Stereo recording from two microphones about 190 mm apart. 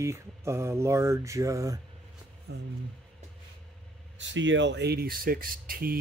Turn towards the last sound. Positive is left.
turn(degrees=-50)  # may be behind; listen again after turning